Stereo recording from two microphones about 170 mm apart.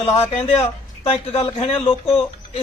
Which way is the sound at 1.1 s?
35° left (ahead or behind).